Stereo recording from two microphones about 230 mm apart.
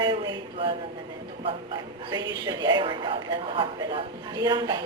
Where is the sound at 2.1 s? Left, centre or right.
Centre.